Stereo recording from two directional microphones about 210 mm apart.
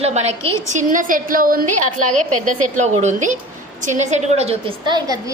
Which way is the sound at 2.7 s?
35° right (ahead or behind).